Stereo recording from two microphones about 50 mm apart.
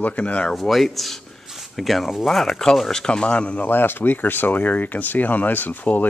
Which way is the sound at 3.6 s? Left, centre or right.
Left.